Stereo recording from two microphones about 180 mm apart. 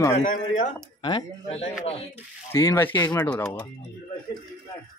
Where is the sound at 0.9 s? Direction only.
30° left (ahead or behind).